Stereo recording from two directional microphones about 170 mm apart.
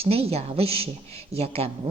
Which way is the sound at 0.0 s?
35° right (ahead or behind).